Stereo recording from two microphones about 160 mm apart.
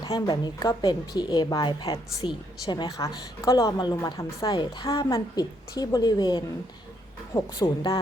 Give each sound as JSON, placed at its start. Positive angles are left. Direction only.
{"t": 0.0, "sound": "a woman's voice", "side_deg": 25}